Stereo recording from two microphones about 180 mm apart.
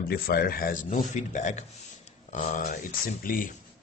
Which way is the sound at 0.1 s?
60° left (ahead or behind).